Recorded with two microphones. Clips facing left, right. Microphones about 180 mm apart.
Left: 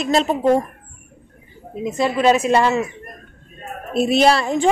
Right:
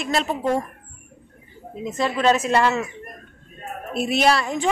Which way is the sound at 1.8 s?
10° left (ahead or behind).